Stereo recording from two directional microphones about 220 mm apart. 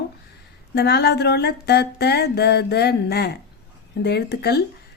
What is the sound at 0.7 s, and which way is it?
A woman's voice, 50° left (ahead or behind).